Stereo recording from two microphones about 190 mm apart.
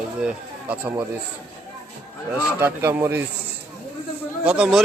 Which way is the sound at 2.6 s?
10° right (ahead or behind).